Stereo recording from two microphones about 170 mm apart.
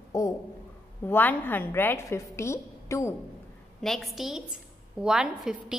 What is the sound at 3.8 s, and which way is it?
A woman's voice, centre (ahead or behind).